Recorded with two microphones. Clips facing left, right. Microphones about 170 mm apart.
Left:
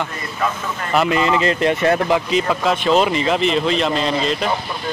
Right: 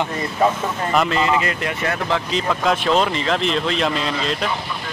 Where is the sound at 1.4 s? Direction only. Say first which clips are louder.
Left 7 dB; 25° left (ahead or behind).